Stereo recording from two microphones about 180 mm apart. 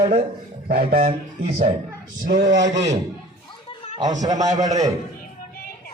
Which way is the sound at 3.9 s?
20° right (ahead or behind).